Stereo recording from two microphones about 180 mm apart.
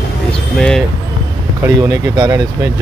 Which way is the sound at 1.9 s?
20° right (ahead or behind).